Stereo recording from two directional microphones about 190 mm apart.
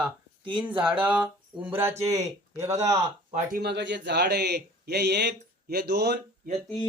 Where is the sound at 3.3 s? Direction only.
50° right (ahead or behind).